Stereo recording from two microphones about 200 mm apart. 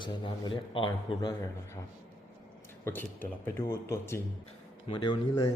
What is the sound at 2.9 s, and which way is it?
A man's voice, 10° left (ahead or behind).